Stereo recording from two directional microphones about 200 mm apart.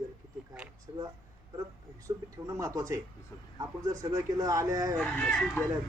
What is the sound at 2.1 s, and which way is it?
Speech, 15° right (ahead or behind).